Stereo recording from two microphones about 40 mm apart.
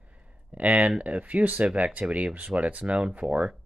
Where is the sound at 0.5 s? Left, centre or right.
Right.